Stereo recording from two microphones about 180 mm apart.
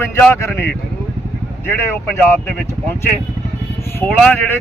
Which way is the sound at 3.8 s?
15° left (ahead or behind).